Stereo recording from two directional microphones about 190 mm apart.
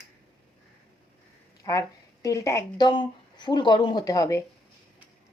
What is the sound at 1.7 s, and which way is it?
Speech, 20° left (ahead or behind).